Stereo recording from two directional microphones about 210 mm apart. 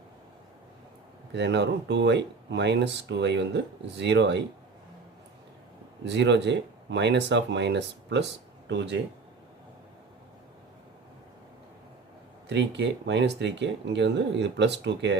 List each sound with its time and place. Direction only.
1.3 s speech: 55° right (ahead or behind)
6.1 s speech: 55° right (ahead or behind)
12.5 s speech: 55° right (ahead or behind)